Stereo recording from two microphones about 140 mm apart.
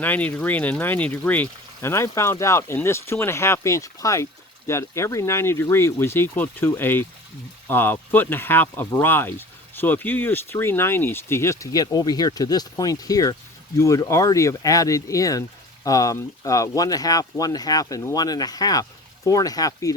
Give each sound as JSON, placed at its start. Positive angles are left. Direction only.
{"t": 0.0, "sound": "speech", "side_deg": 10}